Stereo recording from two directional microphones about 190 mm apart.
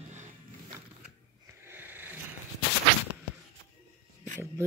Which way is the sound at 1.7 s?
10° right (ahead or behind).